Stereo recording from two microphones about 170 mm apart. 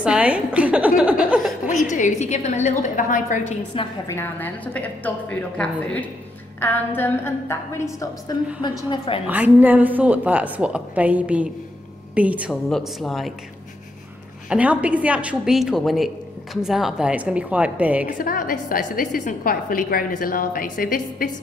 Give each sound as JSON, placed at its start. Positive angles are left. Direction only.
{"t": 0.0, "sound": "a woman's voice", "side_deg": -5}
{"t": 1.7, "sound": "a woman's voice", "side_deg": 45}
{"t": 3.8, "sound": "a woman's voice", "side_deg": 30}
{"t": 4.1, "sound": "a woman's voice", "side_deg": 10}
{"t": 8.5, "sound": "a woman's voice", "side_deg": 25}
{"t": 9.3, "sound": "a woman's voice", "side_deg": -10}
{"t": 14.5, "sound": "a woman's voice", "side_deg": -10}
{"t": 18.0, "sound": "a woman's voice", "side_deg": 55}